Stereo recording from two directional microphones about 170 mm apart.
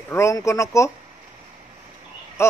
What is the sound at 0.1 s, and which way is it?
Speech, 15° left (ahead or behind).